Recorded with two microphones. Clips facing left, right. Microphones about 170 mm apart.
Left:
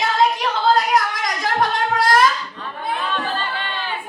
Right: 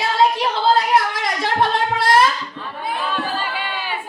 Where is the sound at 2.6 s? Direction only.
5° right (ahead or behind).